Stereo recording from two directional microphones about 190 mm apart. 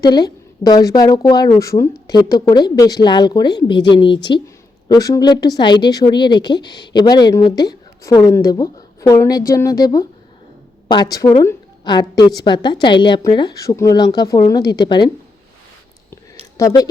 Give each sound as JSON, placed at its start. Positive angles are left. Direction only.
{"t": 0.0, "sound": "a woman's voice", "side_deg": 20}
{"t": 16.6, "sound": "a woman's voice", "side_deg": 20}